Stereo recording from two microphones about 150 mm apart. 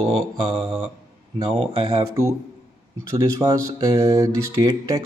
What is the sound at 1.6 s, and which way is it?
Speech, 35° right (ahead or behind).